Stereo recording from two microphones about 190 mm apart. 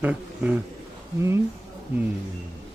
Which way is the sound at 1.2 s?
15° right (ahead or behind).